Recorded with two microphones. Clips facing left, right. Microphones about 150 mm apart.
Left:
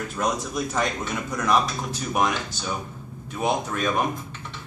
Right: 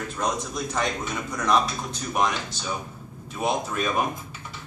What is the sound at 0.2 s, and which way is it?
A man's voice, centre (ahead or behind).